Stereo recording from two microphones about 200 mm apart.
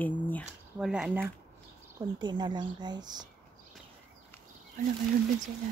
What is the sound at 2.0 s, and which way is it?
Speech, 20° right (ahead or behind).